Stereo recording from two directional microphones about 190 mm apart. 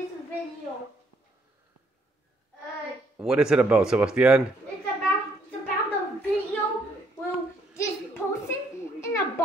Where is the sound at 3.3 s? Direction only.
5° right (ahead or behind).